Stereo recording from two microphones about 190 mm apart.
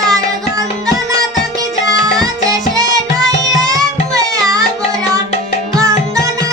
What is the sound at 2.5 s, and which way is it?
Music, 20° right (ahead or behind).